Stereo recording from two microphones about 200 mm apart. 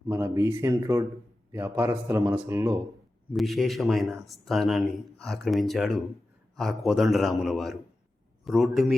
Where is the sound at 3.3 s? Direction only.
Centre (ahead or behind).